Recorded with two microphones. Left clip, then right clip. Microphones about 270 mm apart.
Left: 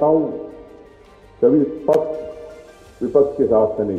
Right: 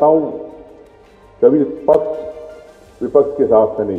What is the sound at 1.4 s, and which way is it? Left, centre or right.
A man's voice, right.